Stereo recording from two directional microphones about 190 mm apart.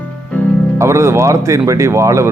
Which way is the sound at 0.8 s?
15° right (ahead or behind).